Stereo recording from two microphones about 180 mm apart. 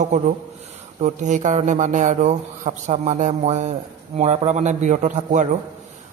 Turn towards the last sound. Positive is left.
turn(degrees=-45)  # may be behind; listen again after turning